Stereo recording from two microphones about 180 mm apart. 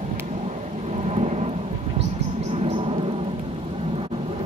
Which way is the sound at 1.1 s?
35° right (ahead or behind).